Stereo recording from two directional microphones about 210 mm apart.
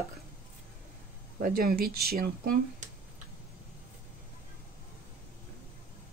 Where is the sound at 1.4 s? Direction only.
45° right (ahead or behind).